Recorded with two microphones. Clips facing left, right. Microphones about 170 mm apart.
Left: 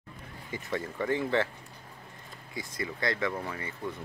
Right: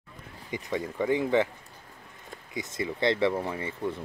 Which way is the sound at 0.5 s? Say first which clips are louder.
Right 3 dB; 15° right (ahead or behind).